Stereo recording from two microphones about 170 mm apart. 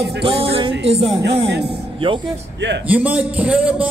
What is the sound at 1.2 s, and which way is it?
Speech, 80° right.